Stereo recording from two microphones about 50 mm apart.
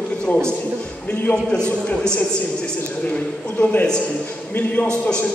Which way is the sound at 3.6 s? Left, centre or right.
Centre.